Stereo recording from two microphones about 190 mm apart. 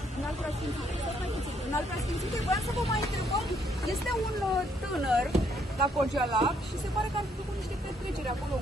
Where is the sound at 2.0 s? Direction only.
Centre (ahead or behind).